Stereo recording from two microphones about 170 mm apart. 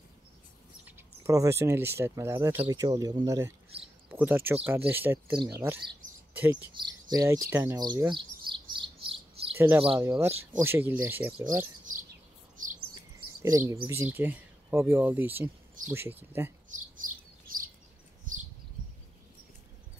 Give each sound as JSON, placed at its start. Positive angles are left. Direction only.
{"t": 0.8, "sound": "speech", "side_deg": -15}
{"t": 6.8, "sound": "bird", "side_deg": -20}
{"t": 9.6, "sound": "speech", "side_deg": -10}
{"t": 12.6, "sound": "chirp", "side_deg": -50}
{"t": 13.4, "sound": "speech", "side_deg": -15}
{"t": 16.7, "sound": "chirp", "side_deg": -55}